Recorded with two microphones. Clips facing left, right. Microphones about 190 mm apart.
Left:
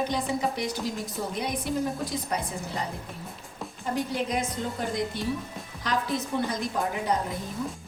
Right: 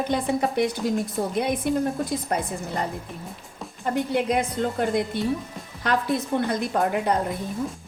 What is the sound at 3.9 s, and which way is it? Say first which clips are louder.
A woman's voice: right 5 dB; 60° right (ahead or behind).